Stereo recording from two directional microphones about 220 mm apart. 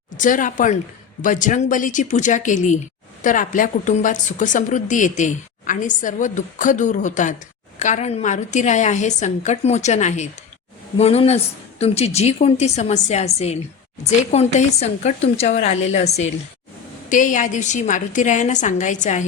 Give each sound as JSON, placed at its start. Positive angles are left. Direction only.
{"t": 0.2, "sound": "a woman's voice", "side_deg": 35}